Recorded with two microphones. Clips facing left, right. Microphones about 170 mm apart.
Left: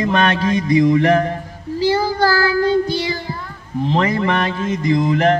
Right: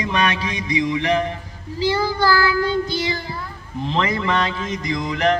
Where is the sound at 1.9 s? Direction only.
45° left (ahead or behind).